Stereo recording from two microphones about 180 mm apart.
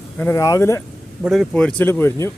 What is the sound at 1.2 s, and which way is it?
Speech, centre (ahead or behind).